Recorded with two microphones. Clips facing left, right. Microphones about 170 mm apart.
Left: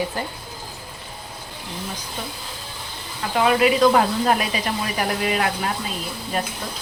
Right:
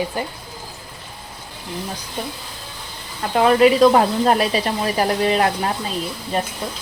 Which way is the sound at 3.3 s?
35° right (ahead or behind).